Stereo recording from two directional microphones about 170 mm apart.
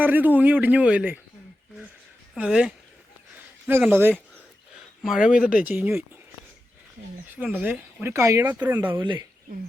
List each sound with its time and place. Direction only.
0.0 s speech: 10° right (ahead or behind)
2.3 s speech: 5° right (ahead or behind)
3.3 s a sound: 10° right (ahead or behind)
5.0 s speech: 5° right (ahead or behind)
7.3 s speech: 10° right (ahead or behind)
9.0 s speech: 25° right (ahead or behind)